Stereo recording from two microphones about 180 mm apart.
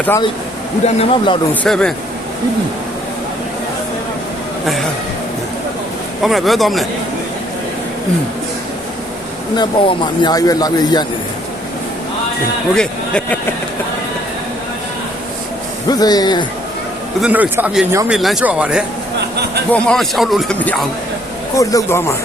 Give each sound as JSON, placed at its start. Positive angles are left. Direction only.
{"t": 0.9, "sound": "speech", "side_deg": 30}
{"t": 1.6, "sound": "speech", "side_deg": 5}
{"t": 6.2, "sound": "speech", "side_deg": 0}
{"t": 9.6, "sound": "speech", "side_deg": 25}
{"t": 12.7, "sound": "speech", "side_deg": 5}
{"t": 15.9, "sound": "speech", "side_deg": 20}
{"t": 17.2, "sound": "speech", "side_deg": -5}
{"t": 21.5, "sound": "a man's voice", "side_deg": 20}